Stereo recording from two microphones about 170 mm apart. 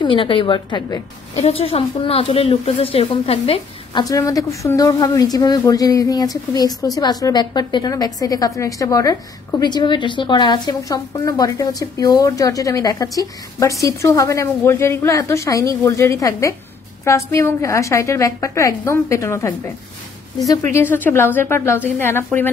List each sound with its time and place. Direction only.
0.0 s a woman's voice: 30° left (ahead or behind)
1.4 s a woman's voice: 35° left (ahead or behind)
4.0 s a woman's voice: 20° left (ahead or behind)
20.7 s a woman's voice: 10° left (ahead or behind)